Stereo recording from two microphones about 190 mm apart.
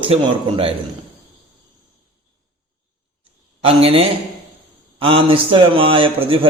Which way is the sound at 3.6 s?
30° right (ahead or behind).